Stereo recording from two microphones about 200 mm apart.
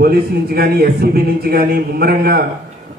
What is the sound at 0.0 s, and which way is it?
A man's voice, 50° right (ahead or behind).